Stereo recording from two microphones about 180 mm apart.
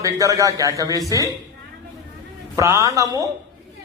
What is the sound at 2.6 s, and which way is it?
Speech, 15° right (ahead or behind).